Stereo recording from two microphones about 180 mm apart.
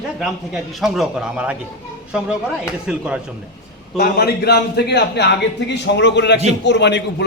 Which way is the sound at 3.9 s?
60° left (ahead or behind).